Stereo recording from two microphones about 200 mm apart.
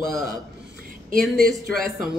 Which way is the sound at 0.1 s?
Centre (ahead or behind).